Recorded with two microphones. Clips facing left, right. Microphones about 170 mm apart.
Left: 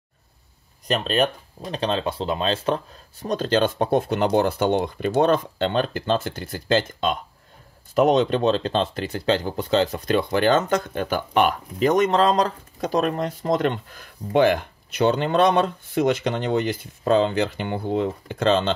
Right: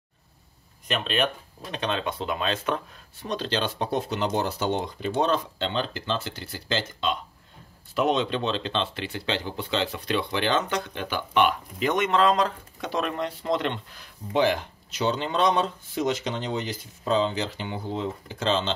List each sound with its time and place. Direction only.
0.8 s speech: 40° left (ahead or behind); by 18.7 s 55° left (ahead or behind)